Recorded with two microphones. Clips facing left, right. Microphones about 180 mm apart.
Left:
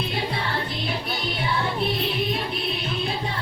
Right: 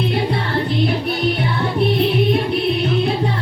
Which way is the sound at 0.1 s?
60° right (ahead or behind).